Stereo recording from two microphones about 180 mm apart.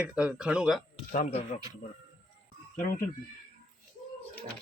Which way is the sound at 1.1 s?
45° left (ahead or behind).